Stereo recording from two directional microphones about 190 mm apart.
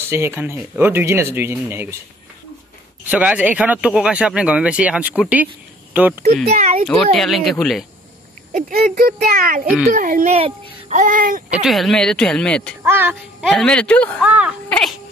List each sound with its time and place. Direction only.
0.1 s speech: 15° right (ahead or behind)
3.1 s speech: 5° right (ahead or behind)
6.5 s a child's voice: 35° right (ahead or behind)
7.2 s speech: centre (ahead or behind)
8.5 s a child's voice: 45° right (ahead or behind)
11.5 s speech: centre (ahead or behind)
12.8 s speech: 10° right (ahead or behind)
13.5 s speech: 5° left (ahead or behind)
14.2 s speech: 5° right (ahead or behind)